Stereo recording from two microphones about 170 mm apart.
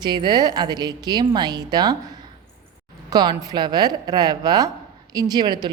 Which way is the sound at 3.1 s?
25° right (ahead or behind).